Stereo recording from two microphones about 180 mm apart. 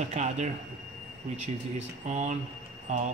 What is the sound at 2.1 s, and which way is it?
Speech, 40° right (ahead or behind).